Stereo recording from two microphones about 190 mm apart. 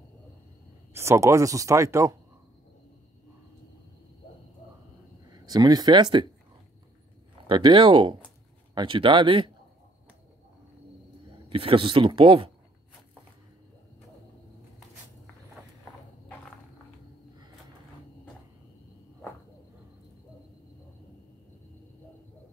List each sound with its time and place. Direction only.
0.9 s speech: 15° right (ahead or behind)
5.3 s speech: 20° right (ahead or behind)
7.4 s speech: 25° right (ahead or behind)
11.4 s speech: 30° right (ahead or behind)